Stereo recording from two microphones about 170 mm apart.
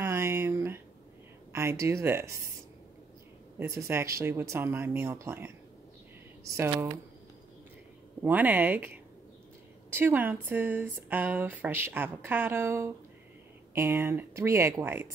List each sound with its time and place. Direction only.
0.0 s a sound: 20° right (ahead or behind)
1.5 s speech: 15° right (ahead or behind)
3.5 s speech: 15° right (ahead or behind)
8.2 s speech: 10° right (ahead or behind)